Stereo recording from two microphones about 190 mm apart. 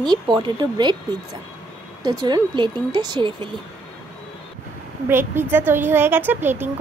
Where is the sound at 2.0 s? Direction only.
20° right (ahead or behind).